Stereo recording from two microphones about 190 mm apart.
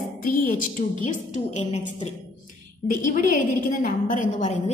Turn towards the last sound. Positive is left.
turn(degrees=40)  # may be behind; listen again after turning